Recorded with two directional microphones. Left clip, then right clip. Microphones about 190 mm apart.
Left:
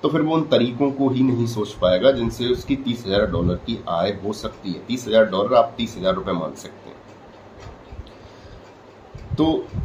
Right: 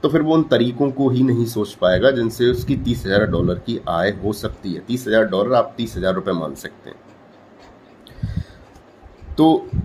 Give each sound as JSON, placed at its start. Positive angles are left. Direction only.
{"t": 0.0, "sound": "speech", "side_deg": -45}